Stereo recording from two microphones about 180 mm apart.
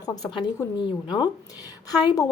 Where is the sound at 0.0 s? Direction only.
20° left (ahead or behind).